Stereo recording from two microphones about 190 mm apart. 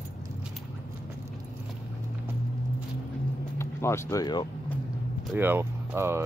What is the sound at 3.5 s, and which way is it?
Speech, 15° left (ahead or behind).